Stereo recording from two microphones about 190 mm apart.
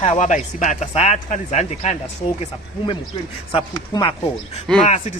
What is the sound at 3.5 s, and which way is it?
Speech, 25° left (ahead or behind).